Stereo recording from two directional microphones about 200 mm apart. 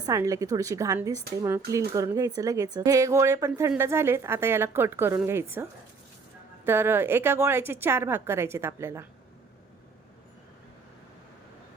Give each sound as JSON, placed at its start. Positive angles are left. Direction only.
{"t": 0.0, "sound": "a woman's voice", "side_deg": -15}
{"t": 6.7, "sound": "a woman's voice", "side_deg": -10}